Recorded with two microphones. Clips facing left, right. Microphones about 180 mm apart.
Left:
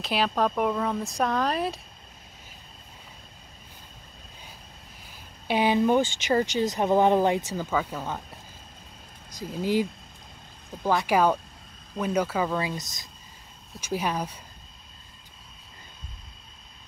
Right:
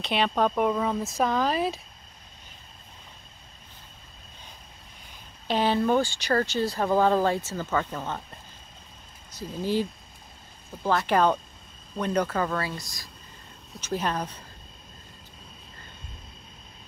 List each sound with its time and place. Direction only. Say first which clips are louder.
0.0 s speech: right 1 dB; centre (ahead or behind)
5.5 s speech: left 1 dB; 15° left (ahead or behind)
11.1 s speech: even; 10° left (ahead or behind)
13.7 s speech: even; 10° left (ahead or behind)